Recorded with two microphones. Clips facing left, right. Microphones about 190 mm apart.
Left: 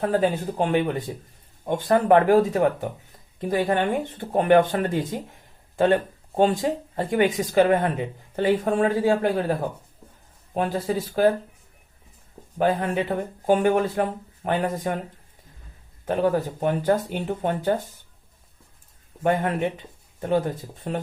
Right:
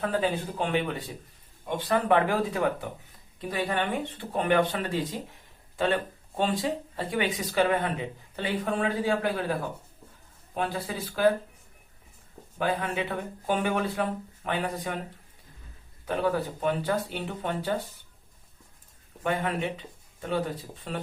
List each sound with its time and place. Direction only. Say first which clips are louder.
0.0 s speech: left 5 dB; 45° left (ahead or behind)
10.5 s speech: left 7 dB; 40° left (ahead or behind)
12.5 s speech: left 6 dB; 45° left (ahead or behind)
16.0 s speech: left 5 dB; 45° left (ahead or behind)
19.2 s speech: left 6 dB; 45° left (ahead or behind)
20.9 s speech: left 6 dB; 45° left (ahead or behind)